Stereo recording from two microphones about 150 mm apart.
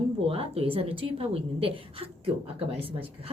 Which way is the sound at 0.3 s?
40° right (ahead or behind).